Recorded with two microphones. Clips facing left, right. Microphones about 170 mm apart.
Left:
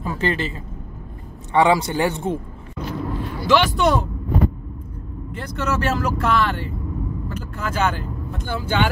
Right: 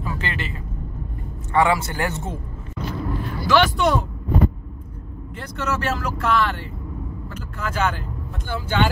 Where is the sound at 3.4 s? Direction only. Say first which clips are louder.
Left 1 dB; 25° left (ahead or behind).